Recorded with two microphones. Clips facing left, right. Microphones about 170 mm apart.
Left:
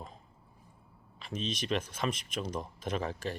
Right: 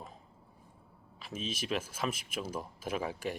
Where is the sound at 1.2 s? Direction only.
5° right (ahead or behind).